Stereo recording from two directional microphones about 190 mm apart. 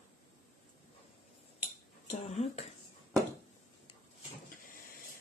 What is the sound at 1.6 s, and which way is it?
Cutlery, 30° left (ahead or behind).